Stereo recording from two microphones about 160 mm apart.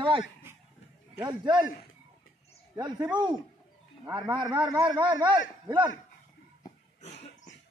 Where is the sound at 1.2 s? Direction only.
25° right (ahead or behind).